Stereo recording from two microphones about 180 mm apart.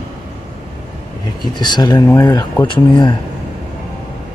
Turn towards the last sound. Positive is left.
turn(degrees=25)  # may be behind; listen again after turning